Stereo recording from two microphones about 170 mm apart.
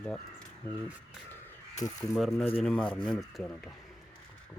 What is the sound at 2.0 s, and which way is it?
Speech, 5° left (ahead or behind).